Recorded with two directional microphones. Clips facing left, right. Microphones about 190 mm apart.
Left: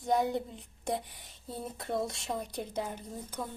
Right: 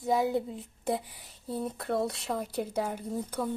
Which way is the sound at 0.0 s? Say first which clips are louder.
Right 2 dB; 5° right (ahead or behind).